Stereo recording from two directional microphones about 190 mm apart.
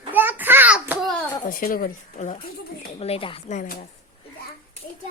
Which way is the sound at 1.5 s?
50° left (ahead or behind).